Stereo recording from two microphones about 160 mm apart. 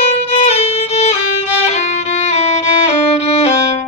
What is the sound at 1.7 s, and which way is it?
Music, 45° left (ahead or behind).